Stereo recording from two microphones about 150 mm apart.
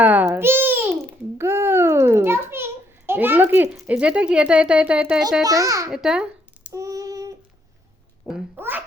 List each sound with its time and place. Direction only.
0.0 s babbling: 10° right (ahead or behind)
1.4 s a sound: 20° right (ahead or behind)
3.1 s a child's voice: 15° right (ahead or behind)
5.4 s a child's voice: 25° right (ahead or behind)
5.9 s a sound: 5° right (ahead or behind)
6.7 s child singing: 25° right (ahead or behind)
8.5 s a child's voice: 15° right (ahead or behind)